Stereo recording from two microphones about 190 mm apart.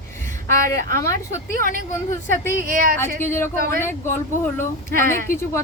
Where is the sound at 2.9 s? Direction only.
10° left (ahead or behind).